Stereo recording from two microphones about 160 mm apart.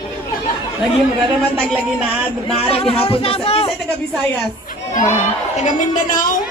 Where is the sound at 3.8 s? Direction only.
Centre (ahead or behind).